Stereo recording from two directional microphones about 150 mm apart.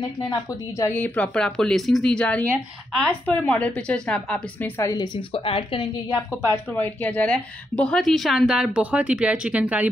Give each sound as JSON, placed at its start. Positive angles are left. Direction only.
{"t": 0.2, "sound": "a woman's voice", "side_deg": 20}
{"t": 6.1, "sound": "a woman's voice", "side_deg": -10}
{"t": 6.7, "sound": "a woman's voice", "side_deg": 10}